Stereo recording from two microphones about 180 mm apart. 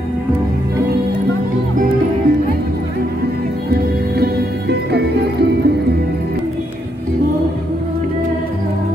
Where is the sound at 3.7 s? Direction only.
65° right (ahead or behind).